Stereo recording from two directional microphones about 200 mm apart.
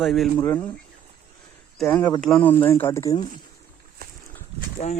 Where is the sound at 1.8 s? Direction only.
5° left (ahead or behind).